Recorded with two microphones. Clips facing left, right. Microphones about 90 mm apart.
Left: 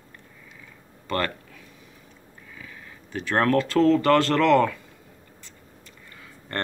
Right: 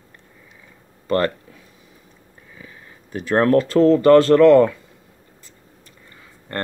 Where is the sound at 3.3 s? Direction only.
25° right (ahead or behind).